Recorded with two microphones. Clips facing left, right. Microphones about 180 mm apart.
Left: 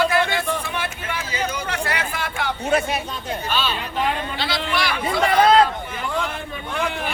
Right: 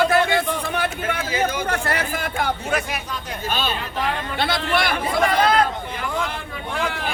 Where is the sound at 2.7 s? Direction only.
25° left (ahead or behind).